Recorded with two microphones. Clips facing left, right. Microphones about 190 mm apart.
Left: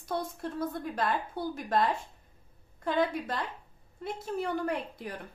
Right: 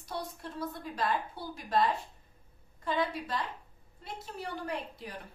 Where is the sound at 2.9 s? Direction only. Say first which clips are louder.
Left 3 dB; 55° left (ahead or behind).